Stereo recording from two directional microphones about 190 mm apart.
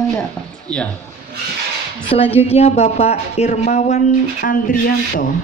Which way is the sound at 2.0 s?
30° left (ahead or behind).